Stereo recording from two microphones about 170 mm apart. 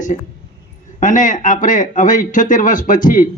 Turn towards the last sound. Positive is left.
turn(degrees=50)  # may be behind; listen again after turning